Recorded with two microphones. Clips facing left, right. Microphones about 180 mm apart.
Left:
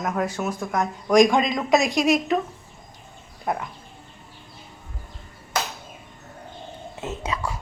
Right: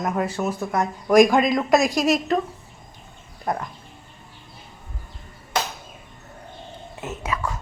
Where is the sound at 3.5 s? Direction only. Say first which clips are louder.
Even; 5° left (ahead or behind).